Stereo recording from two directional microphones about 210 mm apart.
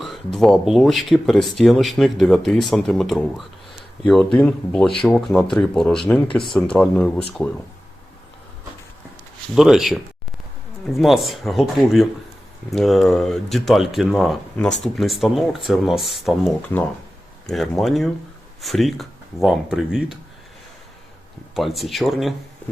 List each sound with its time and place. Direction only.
0.0 s speech: centre (ahead or behind)
9.6 s speech: centre (ahead or behind)
21.5 s speech: centre (ahead or behind)